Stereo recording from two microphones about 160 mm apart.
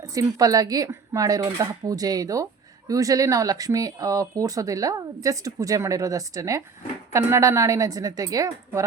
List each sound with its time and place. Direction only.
0.0 s speech: 20° right (ahead or behind)